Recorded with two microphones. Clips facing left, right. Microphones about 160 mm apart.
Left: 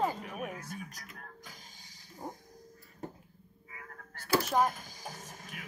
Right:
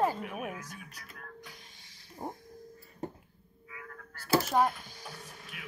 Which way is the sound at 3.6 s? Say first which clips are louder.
Right 3 dB; 45° left (ahead or behind).